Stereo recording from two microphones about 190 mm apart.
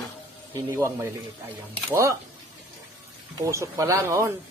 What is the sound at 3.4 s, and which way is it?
Speech, 15° right (ahead or behind).